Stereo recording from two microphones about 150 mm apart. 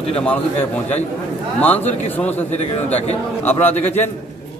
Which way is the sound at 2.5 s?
45° left (ahead or behind).